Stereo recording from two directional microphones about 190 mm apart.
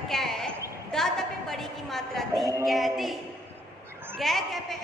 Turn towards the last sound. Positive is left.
turn(degrees=0)  # may be behind; listen again after turning